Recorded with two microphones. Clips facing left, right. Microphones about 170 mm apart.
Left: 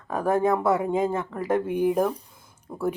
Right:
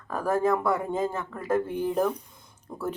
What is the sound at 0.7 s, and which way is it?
Speech, 10° left (ahead or behind).